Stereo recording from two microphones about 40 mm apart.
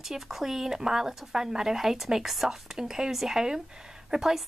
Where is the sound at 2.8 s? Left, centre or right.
Centre.